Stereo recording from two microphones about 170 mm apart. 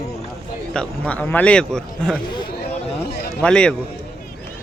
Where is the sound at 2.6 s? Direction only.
70° left (ahead or behind).